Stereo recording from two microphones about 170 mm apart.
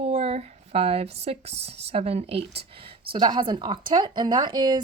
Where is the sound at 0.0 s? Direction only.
35° right (ahead or behind).